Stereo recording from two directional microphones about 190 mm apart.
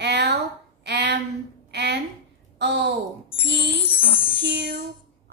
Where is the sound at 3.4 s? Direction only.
60° right (ahead or behind).